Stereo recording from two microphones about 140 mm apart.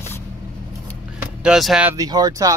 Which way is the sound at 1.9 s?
25° right (ahead or behind).